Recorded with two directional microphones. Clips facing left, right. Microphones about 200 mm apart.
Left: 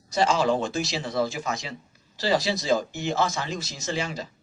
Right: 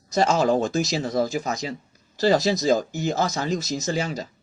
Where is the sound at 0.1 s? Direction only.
45° right (ahead or behind).